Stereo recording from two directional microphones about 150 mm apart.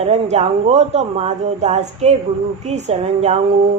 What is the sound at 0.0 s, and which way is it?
Speech, 45° right (ahead or behind).